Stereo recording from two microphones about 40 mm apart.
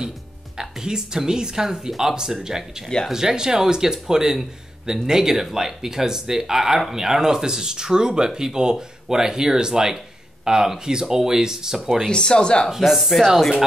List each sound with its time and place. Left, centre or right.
0.6 s speech: centre
11.8 s speech: centre
12.1 s speech: centre
12.9 s speech: centre